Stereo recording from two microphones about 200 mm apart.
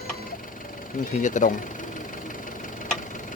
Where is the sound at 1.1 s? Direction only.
40° left (ahead or behind).